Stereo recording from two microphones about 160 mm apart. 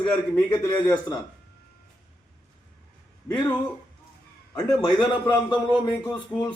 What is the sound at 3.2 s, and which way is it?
Speech, 25° left (ahead or behind).